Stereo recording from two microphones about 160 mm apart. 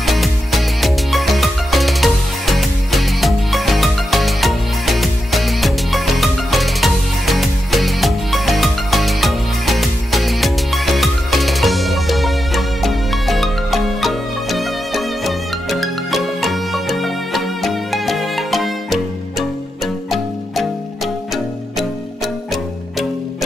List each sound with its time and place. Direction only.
0.0 s music: centre (ahead or behind)